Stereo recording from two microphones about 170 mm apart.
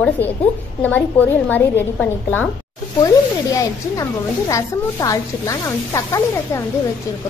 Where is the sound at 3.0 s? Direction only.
20° left (ahead or behind).